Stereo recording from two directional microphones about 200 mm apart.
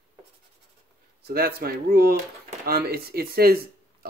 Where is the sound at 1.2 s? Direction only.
50° right (ahead or behind).